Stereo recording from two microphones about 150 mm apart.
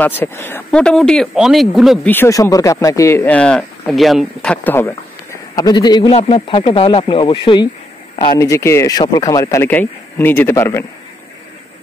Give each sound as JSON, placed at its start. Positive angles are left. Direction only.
{"t": 0.2, "sound": "speech", "side_deg": 15}
{"t": 2.0, "sound": "speech", "side_deg": 15}
{"t": 8.2, "sound": "a man's voice", "side_deg": 25}